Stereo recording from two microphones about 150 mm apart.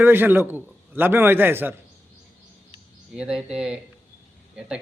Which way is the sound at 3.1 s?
5° right (ahead or behind).